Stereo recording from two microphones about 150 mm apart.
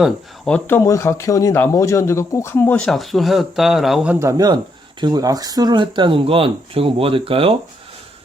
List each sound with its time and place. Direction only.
0.0 s speech: 5° left (ahead or behind)
0.8 s speech: 20° left (ahead or behind)
2.8 s speech: centre (ahead or behind)
4.1 s speech: 20° right (ahead or behind); by 7.5 s 40° right (ahead or behind)